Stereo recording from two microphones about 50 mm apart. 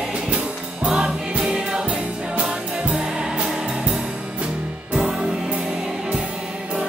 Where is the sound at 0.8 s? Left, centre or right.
Centre.